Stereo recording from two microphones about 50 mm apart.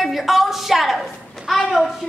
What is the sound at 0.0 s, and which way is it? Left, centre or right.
A woman's voice, centre.